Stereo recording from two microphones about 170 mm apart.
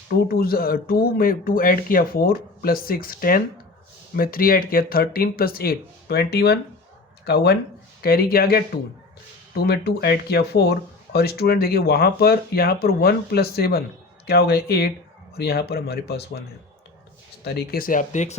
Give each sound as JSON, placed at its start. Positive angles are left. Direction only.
{"t": 0.1, "sound": "speech", "side_deg": 60}
{"t": 17.4, "sound": "speech", "side_deg": 70}